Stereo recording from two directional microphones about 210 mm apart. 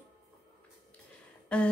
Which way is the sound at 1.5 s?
5° left (ahead or behind).